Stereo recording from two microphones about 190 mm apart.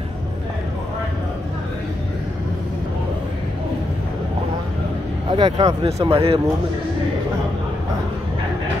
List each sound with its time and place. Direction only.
5.3 s speech: 25° right (ahead or behind)